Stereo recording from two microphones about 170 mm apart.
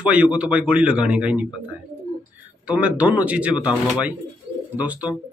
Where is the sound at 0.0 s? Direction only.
5° right (ahead or behind).